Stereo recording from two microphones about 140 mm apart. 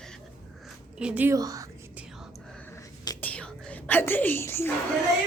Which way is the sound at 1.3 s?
25° right (ahead or behind).